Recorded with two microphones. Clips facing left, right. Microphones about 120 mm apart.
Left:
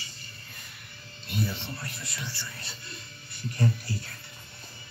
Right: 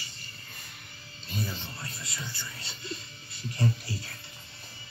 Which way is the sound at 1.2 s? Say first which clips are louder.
Left 3 dB; 65° left (ahead or behind).